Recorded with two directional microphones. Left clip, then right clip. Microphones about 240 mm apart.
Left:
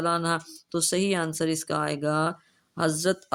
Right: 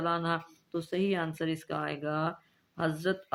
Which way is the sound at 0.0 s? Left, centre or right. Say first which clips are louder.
Left 5 dB; left.